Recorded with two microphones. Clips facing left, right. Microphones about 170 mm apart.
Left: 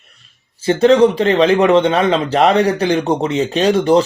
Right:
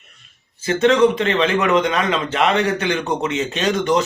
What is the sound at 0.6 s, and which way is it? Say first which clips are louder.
A man's voice: left 4 dB; 35° left (ahead or behind).